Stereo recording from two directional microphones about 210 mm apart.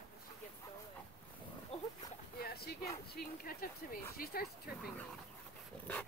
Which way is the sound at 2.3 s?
45° left (ahead or behind).